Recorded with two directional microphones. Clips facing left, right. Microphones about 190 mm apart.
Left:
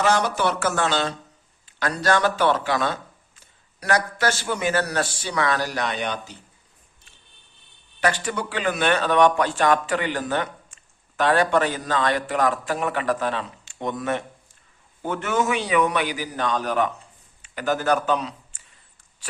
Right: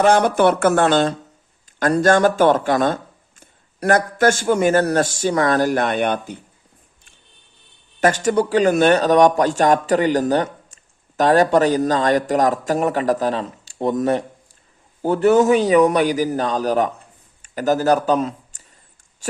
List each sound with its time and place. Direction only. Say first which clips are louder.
0.0 s speech: right 7 dB; 55° right (ahead or behind)
8.0 s a man's voice: right 8 dB; 45° right (ahead or behind)
17.0 s a sound: right 2 dB; 45° right (ahead or behind)
19.2 s speech: right 13 dB; 45° right (ahead or behind)